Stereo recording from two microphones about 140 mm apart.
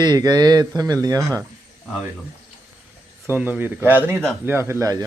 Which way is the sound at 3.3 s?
15° right (ahead or behind).